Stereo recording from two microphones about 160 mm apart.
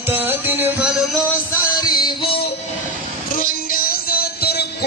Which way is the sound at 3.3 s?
60° left (ahead or behind).